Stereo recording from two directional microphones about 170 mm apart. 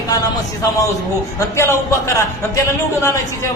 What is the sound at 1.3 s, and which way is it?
Speech, 15° left (ahead or behind).